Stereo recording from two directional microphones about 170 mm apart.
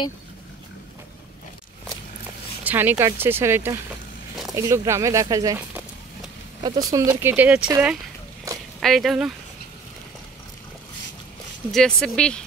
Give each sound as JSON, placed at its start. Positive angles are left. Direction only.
{"t": 2.6, "sound": "speech", "side_deg": -10}
{"t": 6.6, "sound": "speech", "side_deg": -25}
{"t": 8.8, "sound": "speech", "side_deg": 0}
{"t": 11.7, "sound": "speech", "side_deg": 5}